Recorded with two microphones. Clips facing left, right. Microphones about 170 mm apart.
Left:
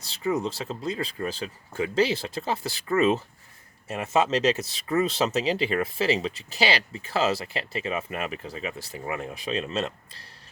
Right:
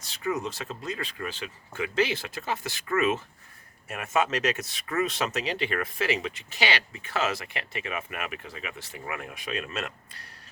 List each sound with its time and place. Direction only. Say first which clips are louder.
0.0 s speech: left 3 dB; 30° left (ahead or behind)